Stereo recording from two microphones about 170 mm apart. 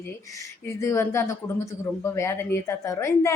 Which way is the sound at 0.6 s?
15° left (ahead or behind).